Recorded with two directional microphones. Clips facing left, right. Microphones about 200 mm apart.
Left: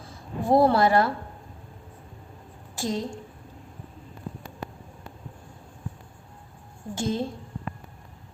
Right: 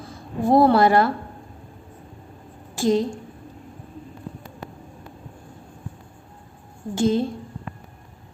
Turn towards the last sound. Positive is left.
turn(degrees=-70)  # may be behind; listen again after turning